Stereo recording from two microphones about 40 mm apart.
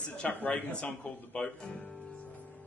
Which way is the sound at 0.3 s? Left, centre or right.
Left.